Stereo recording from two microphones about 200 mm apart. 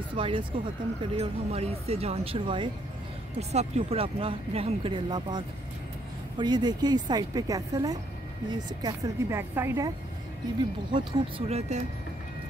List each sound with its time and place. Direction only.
0.1 s a woman's voice: 25° right (ahead or behind)